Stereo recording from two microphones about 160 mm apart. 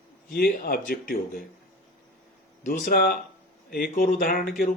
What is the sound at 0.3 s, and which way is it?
Speech, 70° left (ahead or behind).